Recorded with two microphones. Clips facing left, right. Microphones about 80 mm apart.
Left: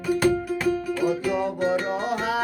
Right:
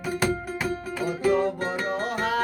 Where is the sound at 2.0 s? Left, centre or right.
Centre.